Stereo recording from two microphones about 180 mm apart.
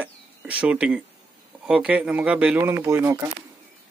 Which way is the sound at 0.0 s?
5° right (ahead or behind).